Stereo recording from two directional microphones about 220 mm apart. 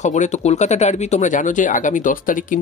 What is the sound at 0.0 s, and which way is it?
Speech, 35° left (ahead or behind).